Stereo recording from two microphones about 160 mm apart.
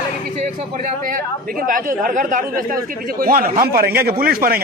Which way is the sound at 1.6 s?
60° right (ahead or behind).